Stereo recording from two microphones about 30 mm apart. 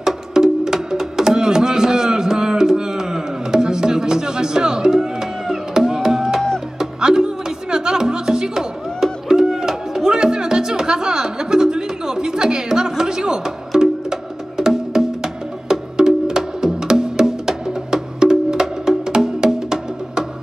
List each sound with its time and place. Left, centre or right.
0.0 s music: centre
17.0 s wood block: right